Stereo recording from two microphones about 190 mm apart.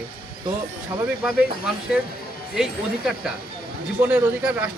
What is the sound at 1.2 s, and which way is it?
Speech, 5° right (ahead or behind).